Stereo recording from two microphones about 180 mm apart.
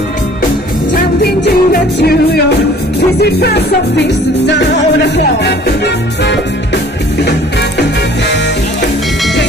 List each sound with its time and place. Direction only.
0.9 s music: 60° left (ahead or behind)